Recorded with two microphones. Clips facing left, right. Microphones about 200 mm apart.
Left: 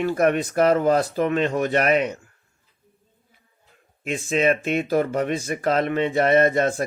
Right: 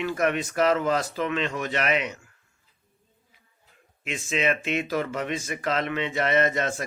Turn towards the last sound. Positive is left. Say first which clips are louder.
# left 6 dB
turn(degrees=45)  # may be behind; listen again after turning